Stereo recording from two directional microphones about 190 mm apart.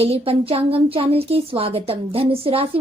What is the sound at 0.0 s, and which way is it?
A woman's voice, 30° right (ahead or behind).